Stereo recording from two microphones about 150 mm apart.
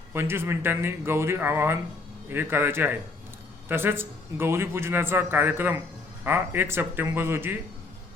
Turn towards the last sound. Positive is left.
turn(degrees=-15)  # may be behind; listen again after turning